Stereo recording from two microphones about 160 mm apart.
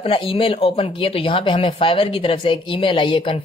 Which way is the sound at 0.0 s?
35° left (ahead or behind).